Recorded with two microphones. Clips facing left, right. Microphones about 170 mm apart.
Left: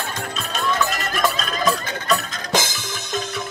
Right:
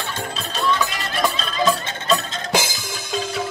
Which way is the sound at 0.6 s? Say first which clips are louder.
Right 1 dB; 50° left (ahead or behind).